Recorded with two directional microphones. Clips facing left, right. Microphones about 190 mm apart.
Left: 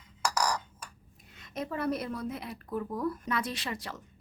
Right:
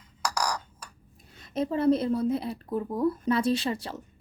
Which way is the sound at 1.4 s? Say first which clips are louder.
Right 7 dB; 30° right (ahead or behind).